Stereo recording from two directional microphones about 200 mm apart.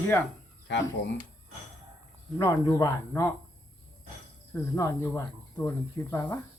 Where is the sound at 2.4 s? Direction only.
15° left (ahead or behind).